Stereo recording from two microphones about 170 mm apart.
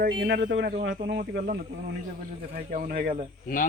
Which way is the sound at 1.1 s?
60° right (ahead or behind).